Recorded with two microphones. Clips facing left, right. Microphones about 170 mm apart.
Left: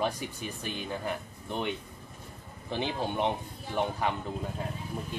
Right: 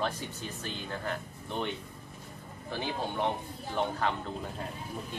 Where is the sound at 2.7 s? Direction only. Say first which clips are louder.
Left 3 dB; 20° left (ahead or behind).